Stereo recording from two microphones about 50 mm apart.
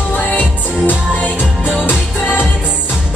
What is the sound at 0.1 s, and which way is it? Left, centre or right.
Music, left.